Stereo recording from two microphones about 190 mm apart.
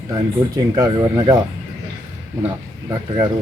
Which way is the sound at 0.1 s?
20° right (ahead or behind).